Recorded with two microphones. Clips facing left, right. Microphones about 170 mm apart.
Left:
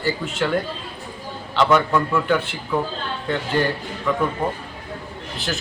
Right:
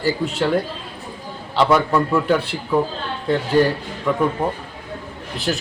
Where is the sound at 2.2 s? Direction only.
35° right (ahead or behind).